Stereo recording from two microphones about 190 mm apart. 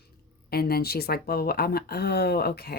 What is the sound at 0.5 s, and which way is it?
Speech, 55° left (ahead or behind).